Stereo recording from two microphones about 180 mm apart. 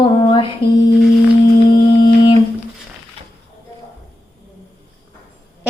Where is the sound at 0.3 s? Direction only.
30° left (ahead or behind).